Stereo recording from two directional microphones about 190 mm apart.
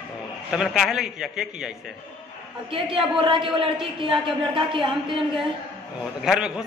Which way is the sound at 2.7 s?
25° right (ahead or behind).